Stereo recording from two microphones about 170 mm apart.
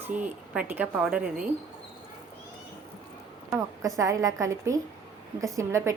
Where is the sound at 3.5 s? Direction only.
20° right (ahead or behind).